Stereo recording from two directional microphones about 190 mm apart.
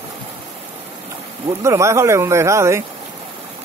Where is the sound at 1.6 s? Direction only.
15° right (ahead or behind).